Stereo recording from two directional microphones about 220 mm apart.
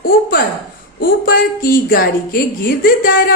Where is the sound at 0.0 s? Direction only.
40° left (ahead or behind).